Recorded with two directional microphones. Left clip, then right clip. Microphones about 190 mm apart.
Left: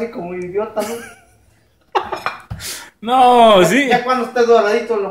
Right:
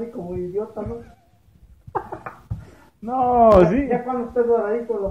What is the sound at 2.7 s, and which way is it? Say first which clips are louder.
Speech: left 10 dB; 25° left (ahead or behind).